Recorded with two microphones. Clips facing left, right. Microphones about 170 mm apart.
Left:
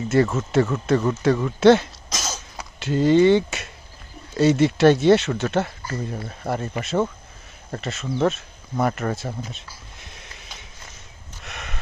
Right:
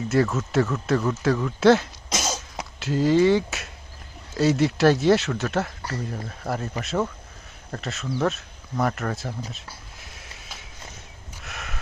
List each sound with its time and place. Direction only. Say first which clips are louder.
0.1 s speech: left 3 dB; centre (ahead or behind)
2.1 s cough: right 3 dB; 20° right (ahead or behind)
2.7 s speech: left 3 dB; centre (ahead or behind)
9.5 s a sound: left 1 dB; centre (ahead or behind)